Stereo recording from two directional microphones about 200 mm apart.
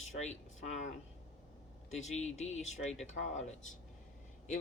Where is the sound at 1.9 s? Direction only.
35° left (ahead or behind).